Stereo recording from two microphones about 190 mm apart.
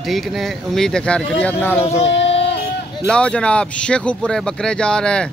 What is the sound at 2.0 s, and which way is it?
Child singing, 35° left (ahead or behind).